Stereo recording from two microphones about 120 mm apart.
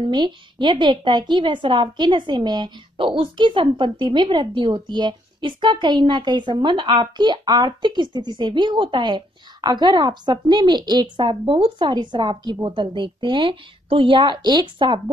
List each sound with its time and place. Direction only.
0.0 s a woman's voice: 40° right (ahead or behind)